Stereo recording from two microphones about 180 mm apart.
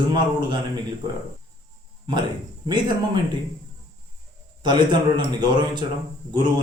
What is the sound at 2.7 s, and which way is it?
Speech, 25° right (ahead or behind).